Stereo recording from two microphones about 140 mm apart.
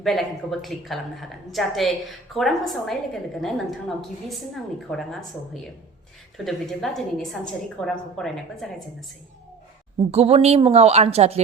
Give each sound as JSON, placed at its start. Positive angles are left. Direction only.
{"t": 0.0, "sound": "a woman's voice", "side_deg": 0}
{"t": 10.1, "sound": "speech", "side_deg": -45}